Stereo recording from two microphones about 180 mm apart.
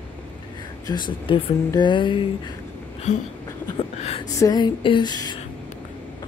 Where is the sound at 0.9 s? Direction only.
25° left (ahead or behind).